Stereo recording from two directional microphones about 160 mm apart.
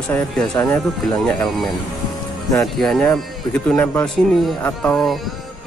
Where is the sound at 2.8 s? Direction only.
5° left (ahead or behind).